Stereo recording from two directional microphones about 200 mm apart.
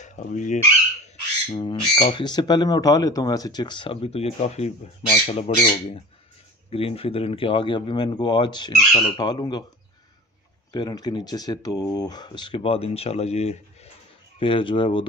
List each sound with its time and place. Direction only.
0.0 s speech: 35° left (ahead or behind)
6.7 s speech: 30° left (ahead or behind)
10.7 s speech: 20° left (ahead or behind)